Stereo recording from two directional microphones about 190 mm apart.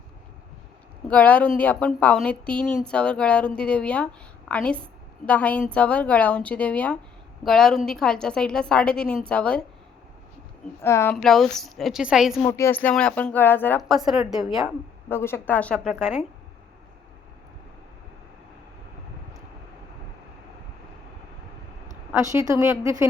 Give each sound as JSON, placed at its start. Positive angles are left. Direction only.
{"t": 1.0, "sound": "a woman's voice", "side_deg": 10}
{"t": 10.8, "sound": "a woman's voice", "side_deg": 15}
{"t": 11.2, "sound": "speech", "side_deg": 0}
{"t": 12.5, "sound": "a woman's voice", "side_deg": 10}
{"t": 15.1, "sound": "a woman's voice", "side_deg": 10}
{"t": 22.1, "sound": "a woman's voice", "side_deg": -15}